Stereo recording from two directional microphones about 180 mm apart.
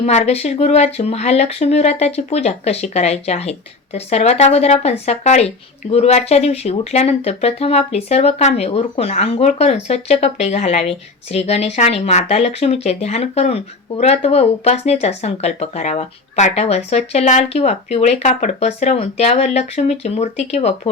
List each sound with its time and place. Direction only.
0.0 s speech: 35° left (ahead or behind)